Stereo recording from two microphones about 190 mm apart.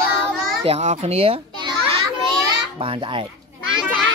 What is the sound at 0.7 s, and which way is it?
A child's voice, 35° right (ahead or behind).